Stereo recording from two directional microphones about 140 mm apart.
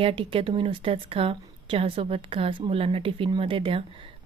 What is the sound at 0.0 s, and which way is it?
Speech, 40° right (ahead or behind).